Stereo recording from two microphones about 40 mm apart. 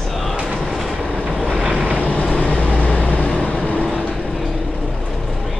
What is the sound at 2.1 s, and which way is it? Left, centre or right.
Vehicle, left.